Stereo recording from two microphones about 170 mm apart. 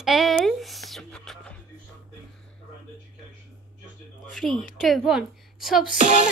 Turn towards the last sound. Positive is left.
turn(degrees=-45)  # may be behind; listen again after turning